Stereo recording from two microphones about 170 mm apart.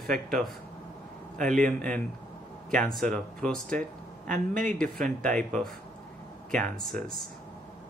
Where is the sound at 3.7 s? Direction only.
50° right (ahead or behind).